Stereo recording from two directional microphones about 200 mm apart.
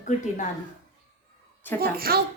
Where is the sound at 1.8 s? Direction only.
50° right (ahead or behind).